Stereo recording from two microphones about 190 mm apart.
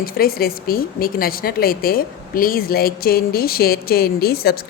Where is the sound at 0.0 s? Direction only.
50° left (ahead or behind).